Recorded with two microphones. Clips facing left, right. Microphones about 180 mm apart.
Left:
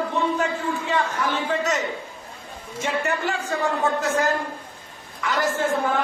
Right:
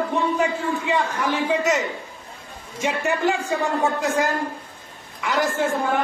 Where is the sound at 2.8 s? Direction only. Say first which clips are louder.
Right 3 dB; 15° right (ahead or behind).